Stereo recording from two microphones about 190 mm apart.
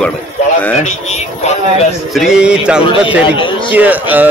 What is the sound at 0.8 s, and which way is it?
Speech, 35° left (ahead or behind).